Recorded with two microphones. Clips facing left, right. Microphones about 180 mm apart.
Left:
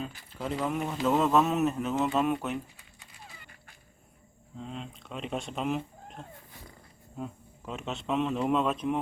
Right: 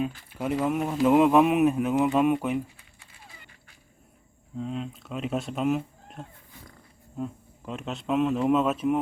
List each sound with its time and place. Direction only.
0.0 s speech: 10° right (ahead or behind)
4.5 s speech: centre (ahead or behind)